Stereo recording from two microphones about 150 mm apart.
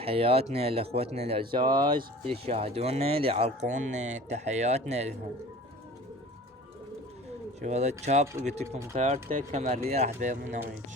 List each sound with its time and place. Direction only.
0.0 s speech: 40° right (ahead or behind)
7.6 s speech: 50° right (ahead or behind)